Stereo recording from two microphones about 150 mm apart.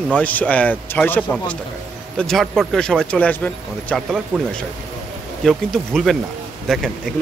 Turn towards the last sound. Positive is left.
turn(degrees=0)  # may be behind; listen again after turning